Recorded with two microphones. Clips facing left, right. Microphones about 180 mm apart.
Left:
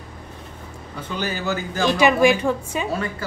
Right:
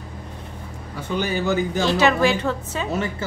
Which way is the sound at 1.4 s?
15° right (ahead or behind).